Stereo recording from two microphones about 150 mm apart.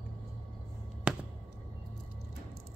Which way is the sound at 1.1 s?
10° right (ahead or behind).